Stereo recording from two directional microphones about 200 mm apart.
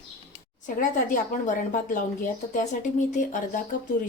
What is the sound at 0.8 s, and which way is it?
A woman's voice, 40° left (ahead or behind).